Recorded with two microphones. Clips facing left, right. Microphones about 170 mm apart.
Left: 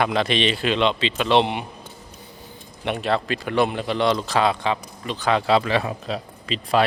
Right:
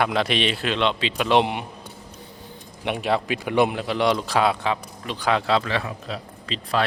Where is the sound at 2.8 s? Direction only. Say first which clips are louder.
Even; 10° right (ahead or behind).